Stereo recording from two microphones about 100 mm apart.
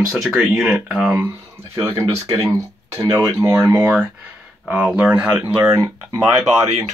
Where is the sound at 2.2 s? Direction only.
40° right (ahead or behind).